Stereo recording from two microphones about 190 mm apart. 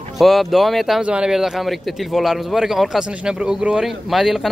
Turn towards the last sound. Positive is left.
turn(degrees=0)  # may be behind; listen again after turning